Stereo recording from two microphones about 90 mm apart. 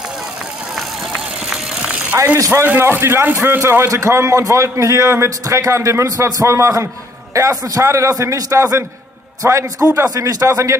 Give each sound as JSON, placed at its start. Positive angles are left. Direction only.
{"t": 2.3, "sound": "a man's voice", "side_deg": -30}